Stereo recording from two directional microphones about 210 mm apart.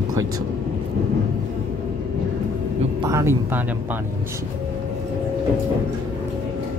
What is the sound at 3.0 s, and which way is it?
Speech, 15° right (ahead or behind).